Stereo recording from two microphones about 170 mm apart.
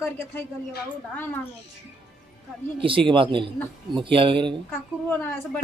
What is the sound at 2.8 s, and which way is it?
Speech, 30° right (ahead or behind).